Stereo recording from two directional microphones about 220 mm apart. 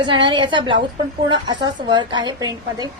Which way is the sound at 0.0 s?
20° right (ahead or behind).